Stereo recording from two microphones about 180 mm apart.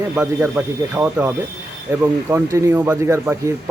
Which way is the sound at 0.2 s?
10° right (ahead or behind).